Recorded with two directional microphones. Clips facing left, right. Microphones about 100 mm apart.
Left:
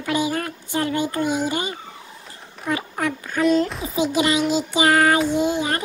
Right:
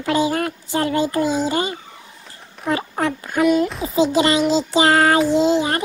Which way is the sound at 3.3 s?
10° right (ahead or behind).